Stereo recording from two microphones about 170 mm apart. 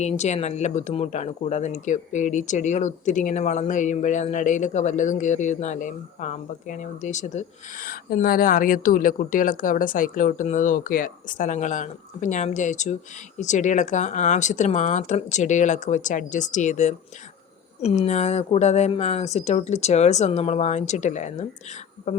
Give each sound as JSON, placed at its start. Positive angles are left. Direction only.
{"t": 0.0, "sound": "speech", "side_deg": 40}